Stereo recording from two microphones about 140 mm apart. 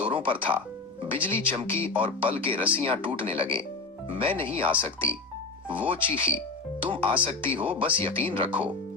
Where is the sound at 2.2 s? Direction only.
40° right (ahead or behind).